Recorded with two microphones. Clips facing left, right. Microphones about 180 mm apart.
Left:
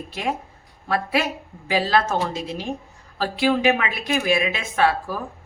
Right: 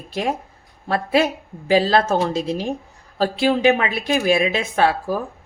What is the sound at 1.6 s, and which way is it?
Speech, 35° right (ahead or behind).